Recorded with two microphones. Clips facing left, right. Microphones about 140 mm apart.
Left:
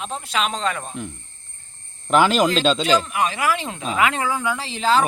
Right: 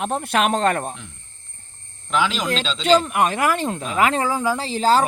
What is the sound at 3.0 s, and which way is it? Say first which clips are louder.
Speech: right 2 dB; 50° right (ahead or behind).